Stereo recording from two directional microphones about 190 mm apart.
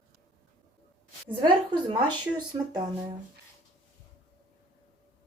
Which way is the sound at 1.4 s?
25° right (ahead or behind).